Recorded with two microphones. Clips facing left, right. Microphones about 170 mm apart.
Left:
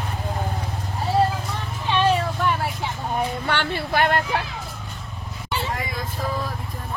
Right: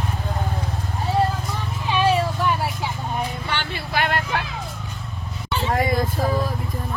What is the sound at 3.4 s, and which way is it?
Vehicle, 60° left (ahead or behind).